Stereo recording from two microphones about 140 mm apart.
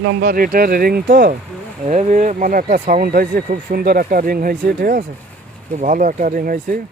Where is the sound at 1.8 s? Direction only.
60° right (ahead or behind); by 5.0 s 90° right.